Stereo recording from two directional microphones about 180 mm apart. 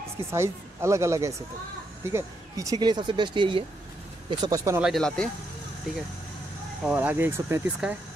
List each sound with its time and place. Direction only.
0.3 s speech: 15° right (ahead or behind)
4.7 s speech: centre (ahead or behind)
6.8 s speech: 10° right (ahead or behind)